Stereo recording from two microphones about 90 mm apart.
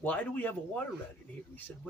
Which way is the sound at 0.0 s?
15° left (ahead or behind).